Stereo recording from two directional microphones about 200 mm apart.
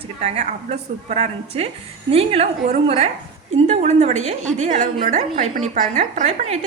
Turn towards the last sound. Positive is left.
turn(degrees=-35)  # may be behind; listen again after turning